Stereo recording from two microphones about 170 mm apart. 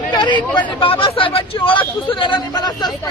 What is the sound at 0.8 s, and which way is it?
Speech, 30° left (ahead or behind).